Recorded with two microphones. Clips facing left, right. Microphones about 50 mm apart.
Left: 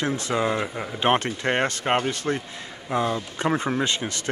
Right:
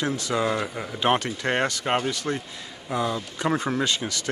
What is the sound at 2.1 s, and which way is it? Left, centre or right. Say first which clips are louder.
Speech: left 2 dB; left.